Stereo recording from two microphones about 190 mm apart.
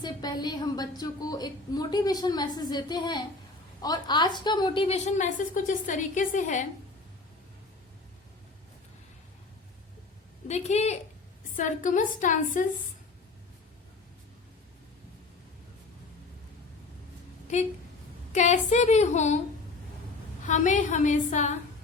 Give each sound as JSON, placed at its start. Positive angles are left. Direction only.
{"t": 0.0, "sound": "a woman's voice", "side_deg": 20}
{"t": 10.5, "sound": "a woman's voice", "side_deg": 35}
{"t": 17.5, "sound": "a woman's voice", "side_deg": 40}
{"t": 20.4, "sound": "a woman's voice", "side_deg": 40}